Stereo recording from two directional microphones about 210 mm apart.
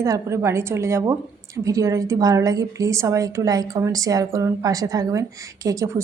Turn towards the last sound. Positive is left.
turn(degrees=-15)  # may be behind; listen again after turning